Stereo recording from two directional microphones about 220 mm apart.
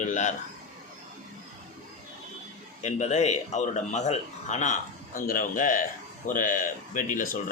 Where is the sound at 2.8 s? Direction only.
30° left (ahead or behind).